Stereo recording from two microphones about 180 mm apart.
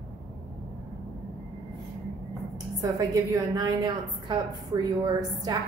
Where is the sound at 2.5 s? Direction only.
20° right (ahead or behind).